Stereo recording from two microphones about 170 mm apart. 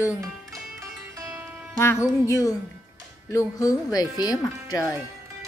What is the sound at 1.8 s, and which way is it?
Speech, 15° left (ahead or behind).